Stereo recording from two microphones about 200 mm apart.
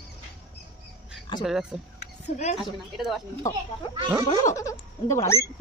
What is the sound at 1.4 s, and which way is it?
Speech, 5° right (ahead or behind).